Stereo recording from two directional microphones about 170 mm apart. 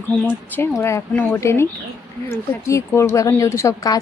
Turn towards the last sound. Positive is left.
turn(degrees=20)  # may be behind; listen again after turning